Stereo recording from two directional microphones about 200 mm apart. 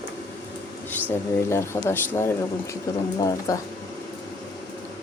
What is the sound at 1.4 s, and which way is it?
Speech, 10° left (ahead or behind).